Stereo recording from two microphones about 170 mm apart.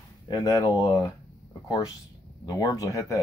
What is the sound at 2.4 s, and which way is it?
Speech, 20° left (ahead or behind).